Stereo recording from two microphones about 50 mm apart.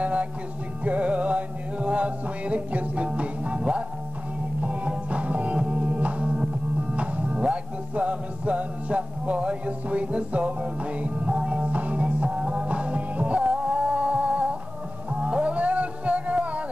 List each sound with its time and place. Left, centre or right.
0.0 s music: right